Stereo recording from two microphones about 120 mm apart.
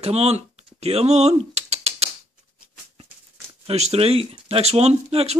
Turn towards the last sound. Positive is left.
turn(degrees=-60)  # may be behind; listen again after turning